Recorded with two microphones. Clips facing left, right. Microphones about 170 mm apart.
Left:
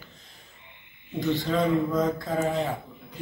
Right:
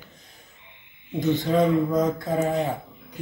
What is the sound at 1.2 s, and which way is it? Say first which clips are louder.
Speech: right 4 dB; 20° right (ahead or behind).